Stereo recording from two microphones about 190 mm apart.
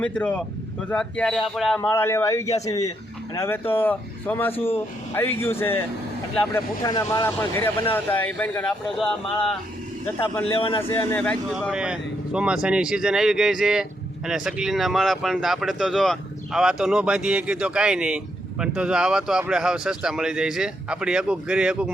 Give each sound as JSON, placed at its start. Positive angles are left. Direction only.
{"t": 0.0, "sound": "speech", "side_deg": 5}
{"t": 1.8, "sound": "speech", "side_deg": 15}
{"t": 10.4, "sound": "a man's voice", "side_deg": 30}
{"t": 10.8, "sound": "speech", "side_deg": 10}